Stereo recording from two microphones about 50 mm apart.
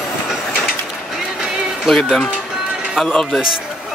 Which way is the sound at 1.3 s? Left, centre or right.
Centre.